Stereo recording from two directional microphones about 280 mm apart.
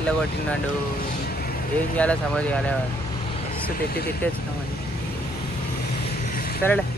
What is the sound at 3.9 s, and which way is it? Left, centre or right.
Speech, left.